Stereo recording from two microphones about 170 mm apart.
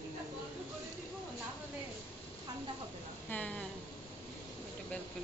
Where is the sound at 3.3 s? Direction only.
10° left (ahead or behind).